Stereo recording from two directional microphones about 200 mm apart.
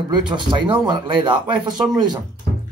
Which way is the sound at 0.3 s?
25° right (ahead or behind).